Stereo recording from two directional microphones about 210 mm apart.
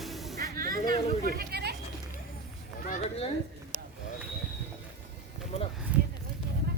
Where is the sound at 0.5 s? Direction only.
45° right (ahead or behind).